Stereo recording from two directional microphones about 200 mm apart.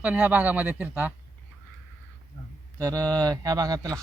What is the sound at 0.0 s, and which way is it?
Speech, 5° right (ahead or behind).